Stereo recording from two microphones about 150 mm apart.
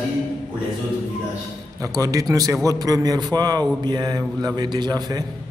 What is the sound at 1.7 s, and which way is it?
A man's voice, 20° right (ahead or behind).